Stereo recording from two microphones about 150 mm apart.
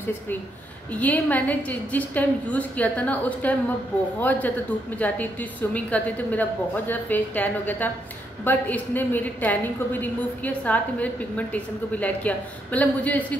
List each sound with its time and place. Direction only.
0.9 s a woman's voice: 10° left (ahead or behind)